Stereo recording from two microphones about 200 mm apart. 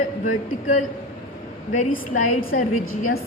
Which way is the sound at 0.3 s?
40° left (ahead or behind).